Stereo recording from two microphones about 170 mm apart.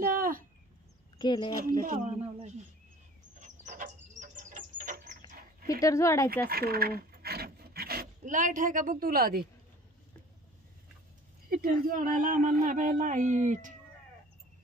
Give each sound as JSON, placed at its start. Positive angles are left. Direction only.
{"t": 0.0, "sound": "a sound", "side_deg": -55}
{"t": 1.1, "sound": "speech", "side_deg": 25}
{"t": 2.0, "sound": "speech", "side_deg": -40}
{"t": 3.3, "sound": "frog", "side_deg": -45}
{"t": 5.7, "sound": "speech", "side_deg": 20}
{"t": 6.4, "sound": "filing", "side_deg": -65}
{"t": 8.2, "sound": "speech", "side_deg": -50}
{"t": 11.4, "sound": "speech", "side_deg": -60}